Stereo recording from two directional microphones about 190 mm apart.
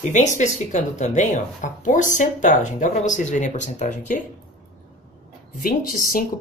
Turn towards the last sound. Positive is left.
turn(degrees=45)  # may be behind; listen again after turning